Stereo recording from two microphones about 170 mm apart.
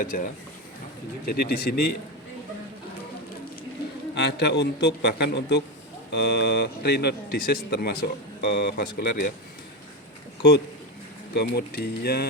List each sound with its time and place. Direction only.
0.0 s speech: 55° left (ahead or behind)
1.3 s speech: 65° left (ahead or behind)
4.1 s speech: 75° left (ahead or behind)
11.3 s speech: 70° left (ahead or behind)